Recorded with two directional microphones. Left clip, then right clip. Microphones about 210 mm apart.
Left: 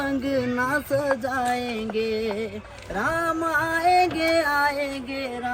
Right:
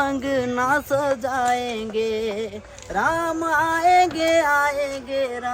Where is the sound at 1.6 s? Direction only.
45° right (ahead or behind).